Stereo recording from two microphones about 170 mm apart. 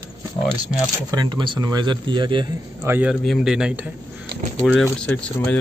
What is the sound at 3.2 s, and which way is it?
Speech, centre (ahead or behind).